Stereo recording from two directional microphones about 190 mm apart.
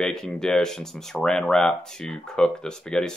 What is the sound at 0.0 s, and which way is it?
Speech, 5° left (ahead or behind).